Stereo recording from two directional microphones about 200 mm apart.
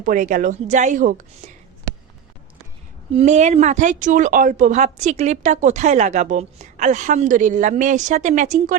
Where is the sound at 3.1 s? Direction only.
35° right (ahead or behind).